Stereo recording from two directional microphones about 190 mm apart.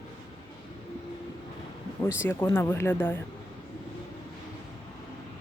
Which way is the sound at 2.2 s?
15° left (ahead or behind).